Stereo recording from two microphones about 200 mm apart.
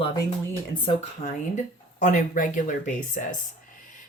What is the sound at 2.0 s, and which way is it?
Speech, 40° left (ahead or behind).